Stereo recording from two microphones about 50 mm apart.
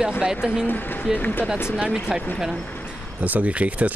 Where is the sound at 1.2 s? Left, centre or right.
Left.